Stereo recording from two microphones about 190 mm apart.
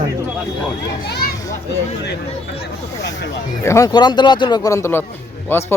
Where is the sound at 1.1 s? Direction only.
60° left (ahead or behind).